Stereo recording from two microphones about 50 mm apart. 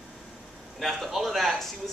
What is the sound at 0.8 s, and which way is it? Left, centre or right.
Speech, centre.